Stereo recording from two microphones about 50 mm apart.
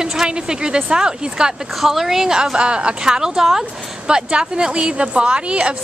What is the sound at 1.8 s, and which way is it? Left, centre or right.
A woman's voice, centre.